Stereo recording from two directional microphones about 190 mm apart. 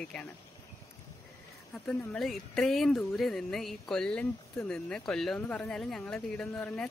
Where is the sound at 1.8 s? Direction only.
Centre (ahead or behind).